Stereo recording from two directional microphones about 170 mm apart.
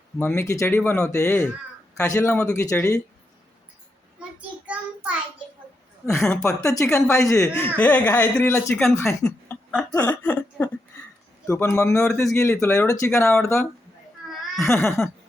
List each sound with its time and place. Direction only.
0.2 s speech: 15° left (ahead or behind)
4.2 s child singing: 5° right (ahead or behind)
6.1 s speech: 15° left (ahead or behind)